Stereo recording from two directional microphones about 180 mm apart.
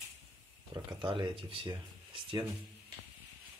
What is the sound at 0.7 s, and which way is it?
Speech, 25° right (ahead or behind).